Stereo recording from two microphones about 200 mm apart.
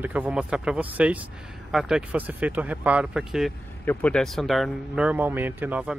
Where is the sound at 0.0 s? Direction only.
5° right (ahead or behind).